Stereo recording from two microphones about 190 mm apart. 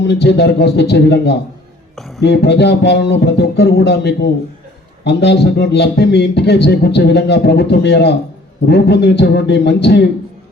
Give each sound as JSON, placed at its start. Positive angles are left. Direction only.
{"t": 0.0, "sound": "a man's voice", "side_deg": 65}
{"t": 2.0, "sound": "a sound", "side_deg": 0}
{"t": 2.2, "sound": "a man's voice", "side_deg": 60}